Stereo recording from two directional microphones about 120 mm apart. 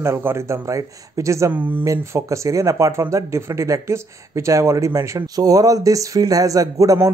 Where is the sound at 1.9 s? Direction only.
25° right (ahead or behind).